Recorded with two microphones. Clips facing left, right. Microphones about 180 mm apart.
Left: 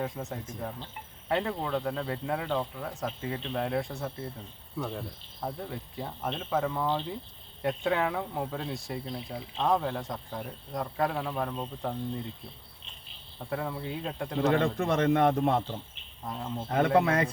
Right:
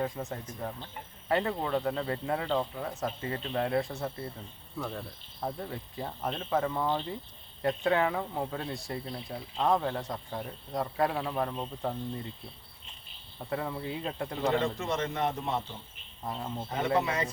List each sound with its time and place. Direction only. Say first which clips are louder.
0.0 s speech: right 1 dB; centre (ahead or behind)
5.4 s speech: even; centre (ahead or behind)
13.5 s speech: even; centre (ahead or behind)
14.6 s a man's voice: left 5 dB; 55° left (ahead or behind)
16.2 s speech: even; centre (ahead or behind)
16.6 s a man's voice: left 5 dB; 60° left (ahead or behind)